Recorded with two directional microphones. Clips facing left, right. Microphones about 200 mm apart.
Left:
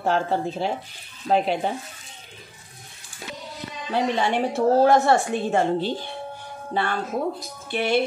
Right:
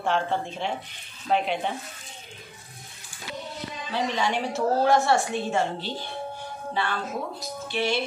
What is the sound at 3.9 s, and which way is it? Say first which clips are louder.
Speech: left 4 dB; 55° left (ahead or behind).